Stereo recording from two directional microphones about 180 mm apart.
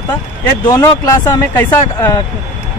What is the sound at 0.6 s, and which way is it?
A man's voice, 20° left (ahead or behind).